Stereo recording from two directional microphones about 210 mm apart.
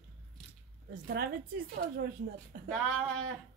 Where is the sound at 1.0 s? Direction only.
50° right (ahead or behind).